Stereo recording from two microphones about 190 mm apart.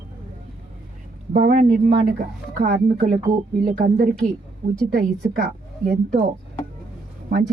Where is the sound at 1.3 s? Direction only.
40° right (ahead or behind).